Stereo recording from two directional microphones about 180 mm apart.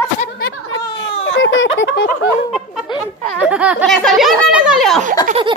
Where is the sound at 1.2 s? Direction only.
90° left.